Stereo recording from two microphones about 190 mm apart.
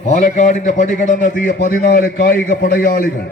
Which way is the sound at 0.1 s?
40° left (ahead or behind).